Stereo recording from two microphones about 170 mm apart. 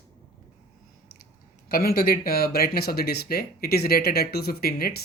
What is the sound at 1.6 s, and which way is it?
Speech, 65° left (ahead or behind).